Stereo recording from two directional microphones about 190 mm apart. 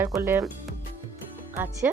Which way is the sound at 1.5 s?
10° right (ahead or behind).